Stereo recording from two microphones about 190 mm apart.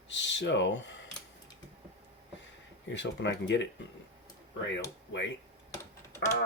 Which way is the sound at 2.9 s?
70° left (ahead or behind).